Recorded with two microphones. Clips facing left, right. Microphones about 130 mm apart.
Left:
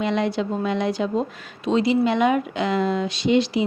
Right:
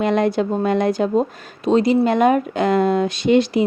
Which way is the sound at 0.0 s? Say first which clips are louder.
Right 5 dB; 50° right (ahead or behind).